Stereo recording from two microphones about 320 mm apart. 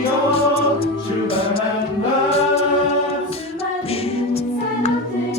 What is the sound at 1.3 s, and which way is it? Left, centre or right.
Music, centre.